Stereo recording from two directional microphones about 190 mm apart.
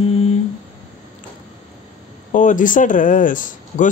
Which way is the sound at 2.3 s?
40° left (ahead or behind).